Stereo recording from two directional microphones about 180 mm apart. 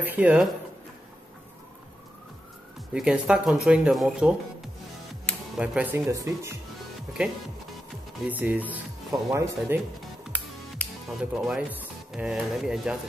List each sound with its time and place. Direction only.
0.0 s speech: 10° right (ahead or behind)
2.9 s speech: 5° right (ahead or behind)
5.3 s music: 5° left (ahead or behind)
5.6 s speech: 10° right (ahead or behind)
8.3 s speech: 10° right (ahead or behind)
11.1 s speech: 5° right (ahead or behind)